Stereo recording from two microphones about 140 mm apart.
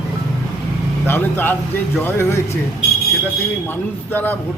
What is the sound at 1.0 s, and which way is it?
A man's voice, 15° left (ahead or behind).